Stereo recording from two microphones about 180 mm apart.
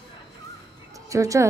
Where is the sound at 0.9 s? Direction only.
20° right (ahead or behind).